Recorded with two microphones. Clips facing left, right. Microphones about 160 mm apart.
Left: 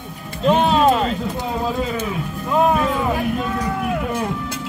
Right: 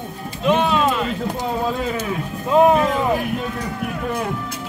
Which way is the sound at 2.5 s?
20° right (ahead or behind).